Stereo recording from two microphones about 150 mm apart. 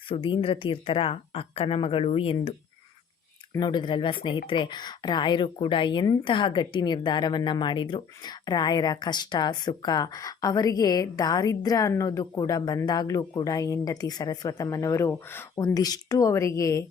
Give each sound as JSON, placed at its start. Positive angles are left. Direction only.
{"t": 0.1, "sound": "speech", "side_deg": 35}
{"t": 15.5, "sound": "speech", "side_deg": 25}